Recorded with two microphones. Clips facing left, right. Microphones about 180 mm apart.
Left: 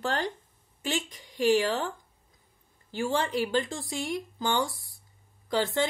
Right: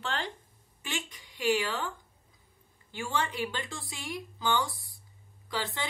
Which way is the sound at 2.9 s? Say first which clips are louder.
Left 5 dB; 40° left (ahead or behind).